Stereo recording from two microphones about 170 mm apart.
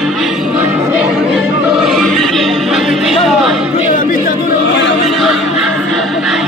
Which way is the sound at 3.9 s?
55° left (ahead or behind).